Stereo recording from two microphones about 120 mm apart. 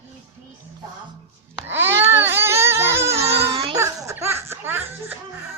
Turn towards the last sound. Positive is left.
turn(degrees=-20)  # may be behind; listen again after turning